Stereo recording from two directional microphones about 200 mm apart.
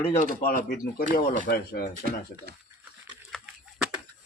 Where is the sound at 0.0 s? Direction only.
35° left (ahead or behind).